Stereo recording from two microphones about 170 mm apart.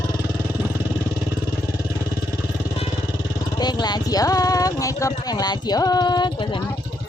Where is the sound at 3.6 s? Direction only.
25° left (ahead or behind).